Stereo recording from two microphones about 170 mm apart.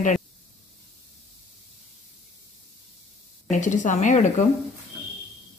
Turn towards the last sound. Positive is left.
turn(degrees=45)  # may be behind; listen again after turning